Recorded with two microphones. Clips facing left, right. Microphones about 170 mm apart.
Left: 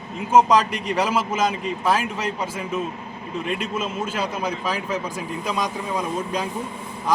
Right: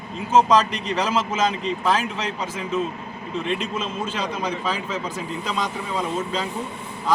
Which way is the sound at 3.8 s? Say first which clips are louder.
Left 1 dB; 10° left (ahead or behind).